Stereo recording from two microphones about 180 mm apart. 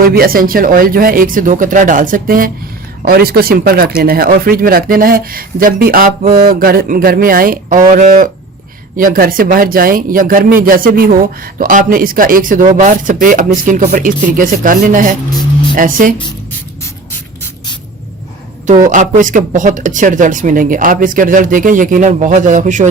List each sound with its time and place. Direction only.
0.0 s speech: 55° right (ahead or behind)
18.9 s speech: 45° right (ahead or behind)